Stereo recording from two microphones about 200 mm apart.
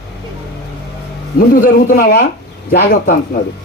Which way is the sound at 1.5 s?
45° left (ahead or behind).